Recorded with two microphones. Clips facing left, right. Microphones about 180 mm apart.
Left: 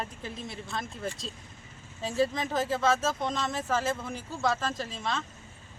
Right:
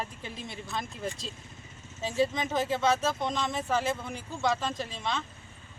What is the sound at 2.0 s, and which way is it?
Speech, centre (ahead or behind).